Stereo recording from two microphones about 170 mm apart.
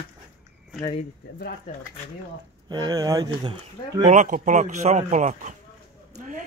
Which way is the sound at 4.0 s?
45° right (ahead or behind).